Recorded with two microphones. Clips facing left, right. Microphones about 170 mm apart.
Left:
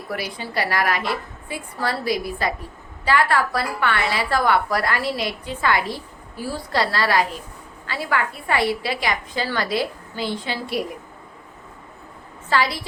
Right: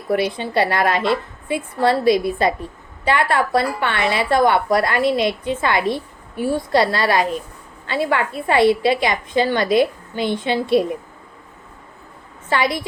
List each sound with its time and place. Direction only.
0.1 s a woman's voice: 25° right (ahead or behind)
12.5 s a woman's voice: 20° right (ahead or behind)